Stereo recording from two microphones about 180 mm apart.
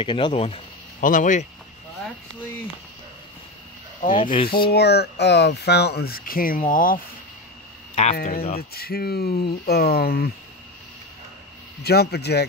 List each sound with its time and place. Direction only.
0.0 s speech: 30° left (ahead or behind)
1.0 s speech: 45° left (ahead or behind)
4.1 s speech: 25° left (ahead or behind)
4.7 s speech: 65° left (ahead or behind); by 8.4 s 40° left (ahead or behind)
8.5 s speech: 60° left (ahead or behind)
11.8 s speech: 60° left (ahead or behind)